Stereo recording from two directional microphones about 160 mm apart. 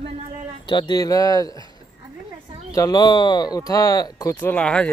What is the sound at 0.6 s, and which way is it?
Speech, 30° left (ahead or behind).